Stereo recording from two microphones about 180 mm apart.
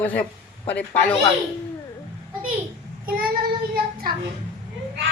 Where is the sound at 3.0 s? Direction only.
55° right (ahead or behind).